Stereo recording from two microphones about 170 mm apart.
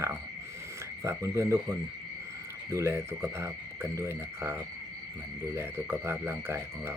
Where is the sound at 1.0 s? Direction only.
15° right (ahead or behind).